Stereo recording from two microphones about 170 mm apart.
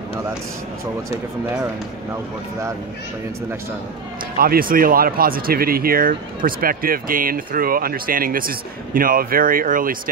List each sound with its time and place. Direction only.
4.4 s speech: 60° right (ahead or behind)